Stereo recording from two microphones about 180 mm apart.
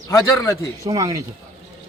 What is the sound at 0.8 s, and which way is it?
Speech, 20° right (ahead or behind).